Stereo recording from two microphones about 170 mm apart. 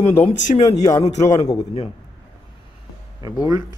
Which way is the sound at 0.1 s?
40° left (ahead or behind).